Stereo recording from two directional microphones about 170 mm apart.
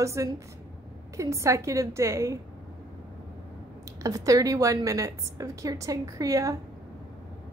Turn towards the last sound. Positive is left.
turn(degrees=-20)  # may be behind; listen again after turning